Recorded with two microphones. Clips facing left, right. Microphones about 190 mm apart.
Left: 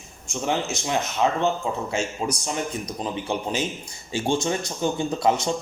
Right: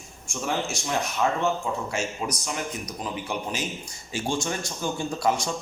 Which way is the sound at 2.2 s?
30° left (ahead or behind).